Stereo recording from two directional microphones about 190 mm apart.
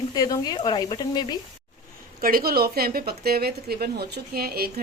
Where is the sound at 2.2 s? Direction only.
50° right (ahead or behind).